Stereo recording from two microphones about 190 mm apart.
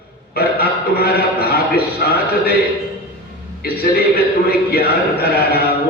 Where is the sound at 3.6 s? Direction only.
55° left (ahead or behind).